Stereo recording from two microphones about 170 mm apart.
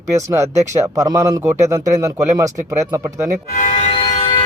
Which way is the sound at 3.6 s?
45° left (ahead or behind).